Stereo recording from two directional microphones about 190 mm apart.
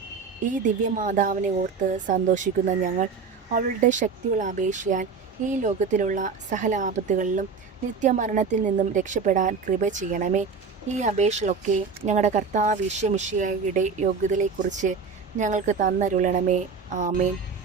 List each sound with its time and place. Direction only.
0.5 s speech: 45° right (ahead or behind)